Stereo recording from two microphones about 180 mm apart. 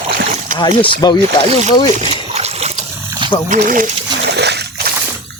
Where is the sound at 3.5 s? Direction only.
50° right (ahead or behind).